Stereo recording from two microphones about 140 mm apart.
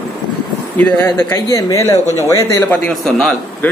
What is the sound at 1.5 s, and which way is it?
Speech, 25° left (ahead or behind).